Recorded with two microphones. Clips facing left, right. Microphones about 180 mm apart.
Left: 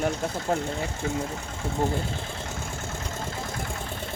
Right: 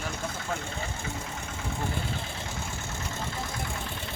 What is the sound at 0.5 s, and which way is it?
Speech, 40° left (ahead or behind).